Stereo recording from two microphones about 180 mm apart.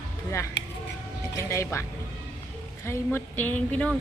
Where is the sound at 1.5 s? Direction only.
15° left (ahead or behind).